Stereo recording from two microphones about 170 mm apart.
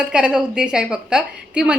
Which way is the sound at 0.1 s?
5° right (ahead or behind).